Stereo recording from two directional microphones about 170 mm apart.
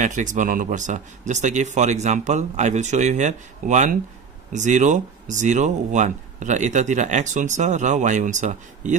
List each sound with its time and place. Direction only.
0.0 s speech: 50° right (ahead or behind)